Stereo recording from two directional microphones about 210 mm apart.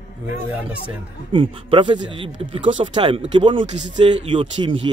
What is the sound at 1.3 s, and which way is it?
Speech, 25° right (ahead or behind).